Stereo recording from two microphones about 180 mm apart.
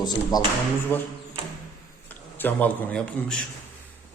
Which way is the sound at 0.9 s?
10° left (ahead or behind).